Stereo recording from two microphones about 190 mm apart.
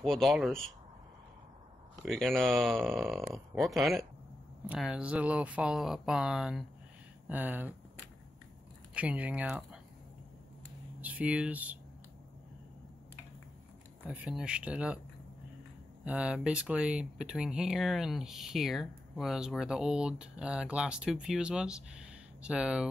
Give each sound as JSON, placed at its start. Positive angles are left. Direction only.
{"t": 0.0, "sound": "speech", "side_deg": 0}
{"t": 2.0, "sound": "speech", "side_deg": 0}
{"t": 8.9, "sound": "speech", "side_deg": -5}
{"t": 11.0, "sound": "speech", "side_deg": -5}
{"t": 14.0, "sound": "speech", "side_deg": -5}
{"t": 16.0, "sound": "speech", "side_deg": -5}